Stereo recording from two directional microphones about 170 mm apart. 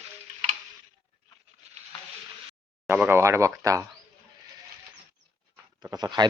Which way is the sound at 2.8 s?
15° right (ahead or behind).